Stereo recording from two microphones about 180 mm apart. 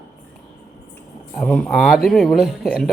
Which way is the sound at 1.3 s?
10° left (ahead or behind).